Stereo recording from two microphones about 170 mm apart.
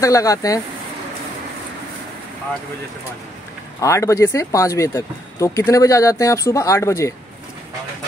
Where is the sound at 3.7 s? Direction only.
15° left (ahead or behind).